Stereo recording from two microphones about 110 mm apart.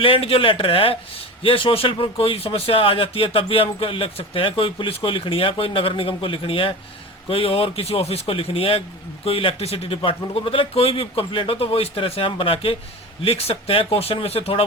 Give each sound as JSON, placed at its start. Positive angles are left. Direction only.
{"t": 0.0, "sound": "speech", "side_deg": 55}